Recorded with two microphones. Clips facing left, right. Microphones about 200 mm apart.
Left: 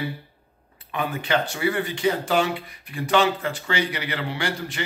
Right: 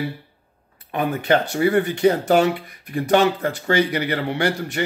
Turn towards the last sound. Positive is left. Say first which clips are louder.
# right 6 dB
turn(degrees=-45)  # may be behind; listen again after turning